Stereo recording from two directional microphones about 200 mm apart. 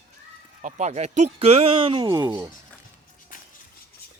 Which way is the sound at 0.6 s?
35° right (ahead or behind).